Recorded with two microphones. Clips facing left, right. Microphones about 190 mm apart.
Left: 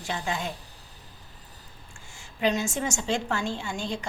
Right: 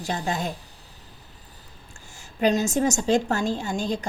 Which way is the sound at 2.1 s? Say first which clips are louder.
Right 4 dB; 40° right (ahead or behind).